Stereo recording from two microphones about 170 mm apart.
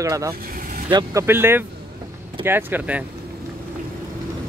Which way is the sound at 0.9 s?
20° right (ahead or behind).